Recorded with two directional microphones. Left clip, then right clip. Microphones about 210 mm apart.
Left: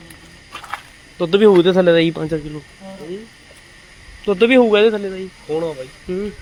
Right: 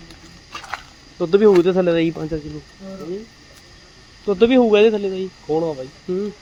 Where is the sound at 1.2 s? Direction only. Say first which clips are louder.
Left 2 dB; centre (ahead or behind).